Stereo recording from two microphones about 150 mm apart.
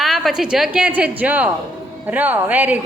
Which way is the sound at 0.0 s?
Centre (ahead or behind).